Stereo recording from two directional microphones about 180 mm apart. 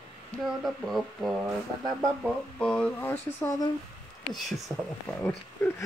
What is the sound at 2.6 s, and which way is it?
Speech, 5° left (ahead or behind).